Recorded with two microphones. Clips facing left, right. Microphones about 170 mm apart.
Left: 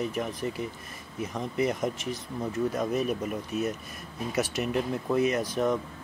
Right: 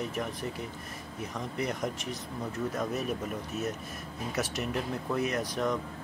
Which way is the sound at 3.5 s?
65° left (ahead or behind).